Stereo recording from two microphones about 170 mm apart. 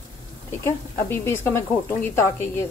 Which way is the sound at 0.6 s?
15° left (ahead or behind).